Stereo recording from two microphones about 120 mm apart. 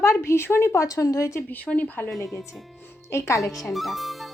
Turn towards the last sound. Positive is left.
turn(degrees=0)  # may be behind; listen again after turning